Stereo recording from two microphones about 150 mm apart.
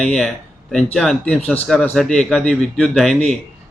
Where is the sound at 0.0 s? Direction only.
5° left (ahead or behind).